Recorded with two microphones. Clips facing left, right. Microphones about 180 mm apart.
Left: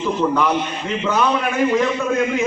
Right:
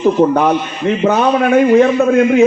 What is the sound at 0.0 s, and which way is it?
A man's voice, 50° right (ahead or behind).